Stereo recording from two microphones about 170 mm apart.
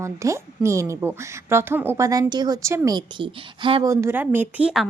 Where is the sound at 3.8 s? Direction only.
15° right (ahead or behind).